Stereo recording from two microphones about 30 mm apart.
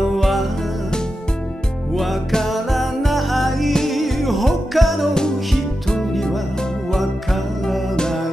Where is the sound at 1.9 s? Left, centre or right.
Centre.